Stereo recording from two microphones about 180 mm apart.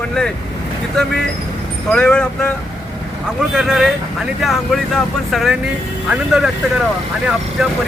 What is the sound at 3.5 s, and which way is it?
Speech, centre (ahead or behind).